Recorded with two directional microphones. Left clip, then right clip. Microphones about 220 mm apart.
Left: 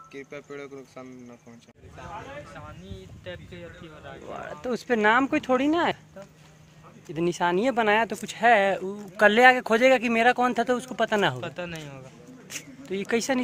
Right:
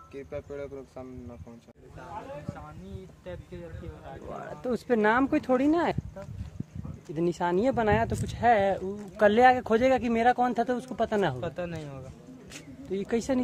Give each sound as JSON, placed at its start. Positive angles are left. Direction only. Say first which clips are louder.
{"t": 0.1, "sound": "speech", "louder": "right 2 dB", "side_deg": -40}
{"t": 3.3, "sound": "speech", "louder": "left 2 dB", "side_deg": -40}
{"t": 4.3, "sound": "speech", "louder": "left 1 dB", "side_deg": 0}
{"t": 7.2, "sound": "speech", "louder": "left 3 dB", "side_deg": 5}
{"t": 11.4, "sound": "speech", "louder": "even", "side_deg": -35}
{"t": 12.9, "sound": "speech", "louder": "left 3 dB", "side_deg": 0}